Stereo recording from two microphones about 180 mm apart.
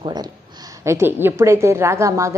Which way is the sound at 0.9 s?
15° right (ahead or behind).